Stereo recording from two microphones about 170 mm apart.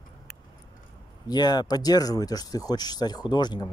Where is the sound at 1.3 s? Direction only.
25° left (ahead or behind).